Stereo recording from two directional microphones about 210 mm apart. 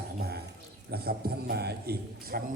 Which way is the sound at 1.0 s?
50° right (ahead or behind).